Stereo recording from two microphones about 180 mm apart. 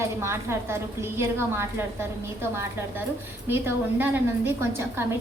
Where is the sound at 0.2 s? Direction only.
15° right (ahead or behind).